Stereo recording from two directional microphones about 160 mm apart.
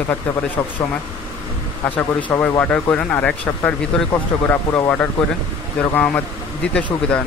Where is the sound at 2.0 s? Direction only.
10° left (ahead or behind).